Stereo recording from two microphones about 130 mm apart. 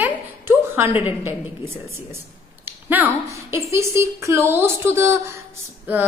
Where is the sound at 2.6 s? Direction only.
15° right (ahead or behind).